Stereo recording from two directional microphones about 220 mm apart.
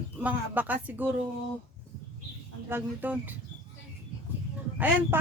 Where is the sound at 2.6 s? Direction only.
10° right (ahead or behind).